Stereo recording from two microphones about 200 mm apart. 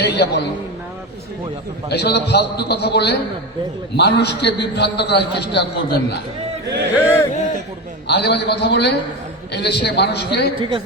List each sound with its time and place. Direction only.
0.0 s a man's voice: 55° left (ahead or behind)
1.9 s a man's voice: 55° left (ahead or behind)
6.9 s speech: 10° left (ahead or behind)
8.0 s a man's voice: 55° left (ahead or behind)
10.6 s a woman's voice: 25° right (ahead or behind)